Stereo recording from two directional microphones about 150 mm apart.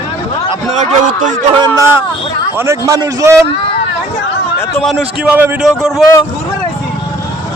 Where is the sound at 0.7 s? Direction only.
50° right (ahead or behind).